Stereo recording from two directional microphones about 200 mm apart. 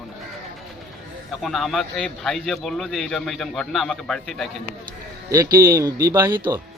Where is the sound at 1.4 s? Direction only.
Centre (ahead or behind).